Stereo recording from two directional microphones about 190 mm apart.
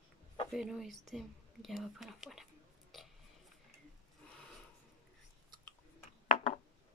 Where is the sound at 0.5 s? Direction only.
5° right (ahead or behind).